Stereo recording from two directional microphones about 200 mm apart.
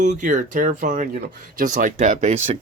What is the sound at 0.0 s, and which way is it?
Speech, 40° right (ahead or behind).